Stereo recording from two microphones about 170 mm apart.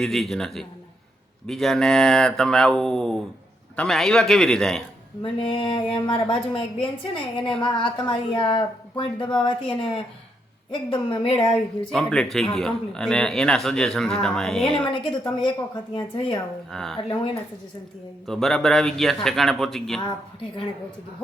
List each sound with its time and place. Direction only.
0.0 s a man's voice: centre (ahead or behind)
5.2 s speech: 30° left (ahead or behind)
11.9 s a man's voice: 5° left (ahead or behind)
14.8 s speech: 30° left (ahead or behind)
16.7 s a man's voice: centre (ahead or behind)
18.3 s a man's voice: centre (ahead or behind)